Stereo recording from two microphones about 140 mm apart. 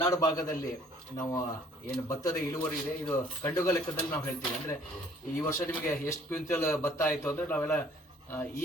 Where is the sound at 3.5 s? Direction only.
25° left (ahead or behind).